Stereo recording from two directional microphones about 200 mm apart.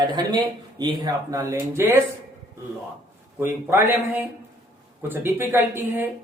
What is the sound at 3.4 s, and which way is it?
Speech, 10° right (ahead or behind).